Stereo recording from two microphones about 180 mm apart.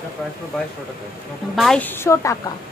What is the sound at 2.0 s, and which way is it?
Speech, 15° left (ahead or behind).